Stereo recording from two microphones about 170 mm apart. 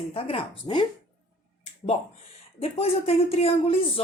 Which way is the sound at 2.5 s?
35° left (ahead or behind).